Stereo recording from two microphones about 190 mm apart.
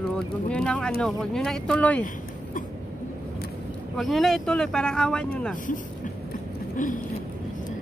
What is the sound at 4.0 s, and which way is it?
Speech, centre (ahead or behind).